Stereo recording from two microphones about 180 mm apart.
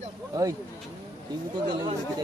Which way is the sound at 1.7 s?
25° right (ahead or behind).